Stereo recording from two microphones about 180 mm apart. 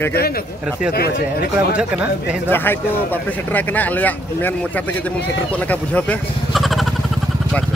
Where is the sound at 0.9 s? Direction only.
60° left (ahead or behind).